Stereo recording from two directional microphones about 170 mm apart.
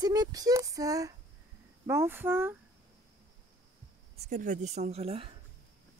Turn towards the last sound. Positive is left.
turn(degrees=-35)  # may be behind; listen again after turning